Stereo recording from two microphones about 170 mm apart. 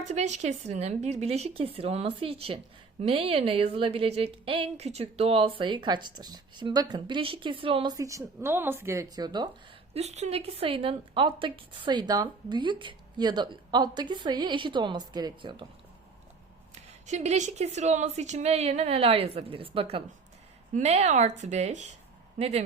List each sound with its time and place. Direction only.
0.1 s a woman's voice: 40° right (ahead or behind); by 9.5 s 25° right (ahead or behind)
9.9 s a woman's voice: 40° right (ahead or behind)
17.1 s a woman's voice: 45° right (ahead or behind)